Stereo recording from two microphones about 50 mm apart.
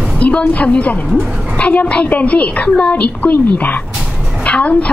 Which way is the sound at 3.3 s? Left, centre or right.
Left.